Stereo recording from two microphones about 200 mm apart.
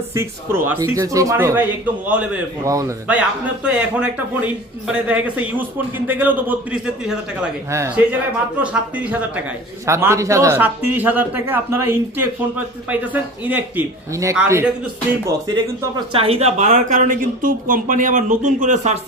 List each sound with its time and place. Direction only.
0.1 s speech: 15° right (ahead or behind)
16.1 s speech: 30° right (ahead or behind)